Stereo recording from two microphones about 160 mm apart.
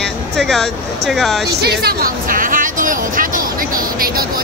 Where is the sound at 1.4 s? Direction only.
90° right.